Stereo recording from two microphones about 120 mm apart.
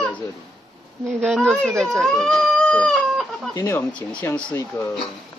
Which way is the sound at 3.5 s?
30° left (ahead or behind).